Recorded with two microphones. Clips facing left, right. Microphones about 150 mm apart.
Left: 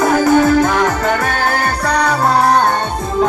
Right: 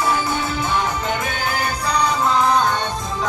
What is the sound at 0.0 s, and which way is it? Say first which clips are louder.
Music: left 10 dB; 45° left (ahead or behind).